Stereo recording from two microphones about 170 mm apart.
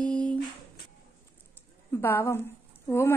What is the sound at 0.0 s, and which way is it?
Humming, 5° left (ahead or behind).